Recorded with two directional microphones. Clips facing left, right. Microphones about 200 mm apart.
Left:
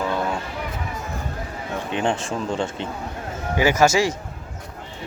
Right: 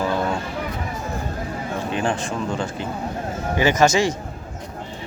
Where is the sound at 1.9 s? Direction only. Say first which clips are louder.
Left 1 dB; 25° left (ahead or behind).